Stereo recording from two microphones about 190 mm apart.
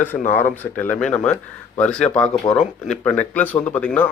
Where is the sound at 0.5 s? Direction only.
10° left (ahead or behind).